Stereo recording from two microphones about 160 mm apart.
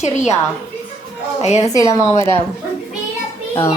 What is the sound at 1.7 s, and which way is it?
Speech, 20° left (ahead or behind).